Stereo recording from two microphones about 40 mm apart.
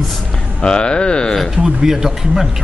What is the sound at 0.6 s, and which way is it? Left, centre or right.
Speech, left.